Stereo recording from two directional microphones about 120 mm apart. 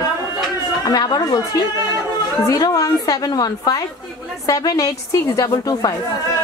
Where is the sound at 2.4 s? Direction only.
30° left (ahead or behind).